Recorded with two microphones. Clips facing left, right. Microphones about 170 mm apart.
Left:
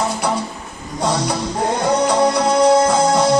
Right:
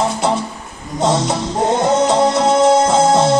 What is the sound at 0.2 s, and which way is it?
Music, 25° right (ahead or behind).